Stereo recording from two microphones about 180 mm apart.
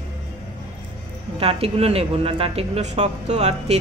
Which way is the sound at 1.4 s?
30° right (ahead or behind).